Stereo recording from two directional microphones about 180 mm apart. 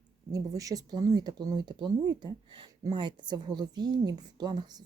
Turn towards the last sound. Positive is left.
turn(degrees=-25)  # may be behind; listen again after turning